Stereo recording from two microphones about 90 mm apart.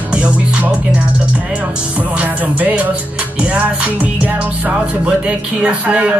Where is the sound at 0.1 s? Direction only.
15° right (ahead or behind).